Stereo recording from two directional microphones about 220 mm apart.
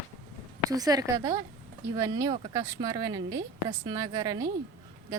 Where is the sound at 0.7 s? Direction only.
15° right (ahead or behind).